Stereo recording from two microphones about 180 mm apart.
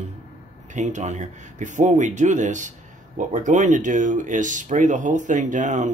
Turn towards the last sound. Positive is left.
turn(degrees=-40)  # may be behind; listen again after turning